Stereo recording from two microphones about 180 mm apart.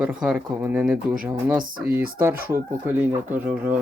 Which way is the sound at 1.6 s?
55° right (ahead or behind).